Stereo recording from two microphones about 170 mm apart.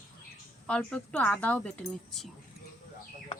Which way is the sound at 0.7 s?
5° left (ahead or behind).